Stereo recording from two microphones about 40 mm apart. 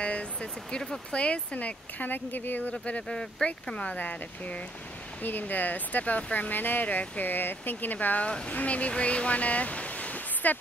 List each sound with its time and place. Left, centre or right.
0.0 s vehicle: left
0.7 s speech: centre
1.1 s speech: left
2.0 s speech: left
2.7 s speech: left
5.2 s speech: left